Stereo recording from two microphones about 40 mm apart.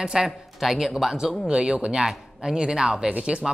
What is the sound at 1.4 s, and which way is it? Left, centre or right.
Speech, right.